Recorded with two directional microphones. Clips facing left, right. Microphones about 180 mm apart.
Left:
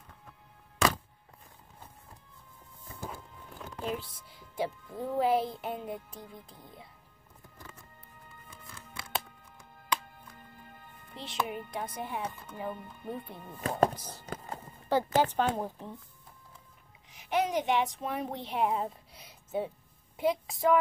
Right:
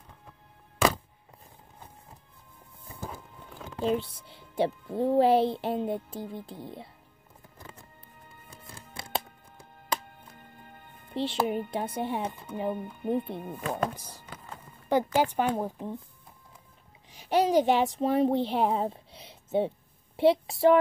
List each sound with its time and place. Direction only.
3.7 s speech: 25° right (ahead or behind)
8.5 s music: 30° right (ahead or behind)
11.1 s speech: 30° right (ahead or behind)
13.6 s chopping: 40° left (ahead or behind)
14.2 s music: 40° left (ahead or behind)
14.9 s a woman's voice: 15° right (ahead or behind)
17.1 s a child's voice: 30° right (ahead or behind)